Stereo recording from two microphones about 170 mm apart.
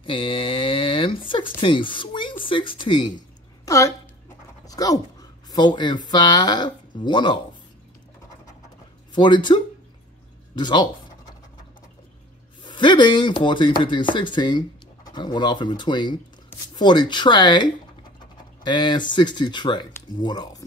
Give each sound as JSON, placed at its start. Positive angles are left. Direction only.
{"t": 0.0, "sound": "speech", "side_deg": 30}
{"t": 9.1, "sound": "speech", "side_deg": 25}
{"t": 12.6, "sound": "speech", "side_deg": 25}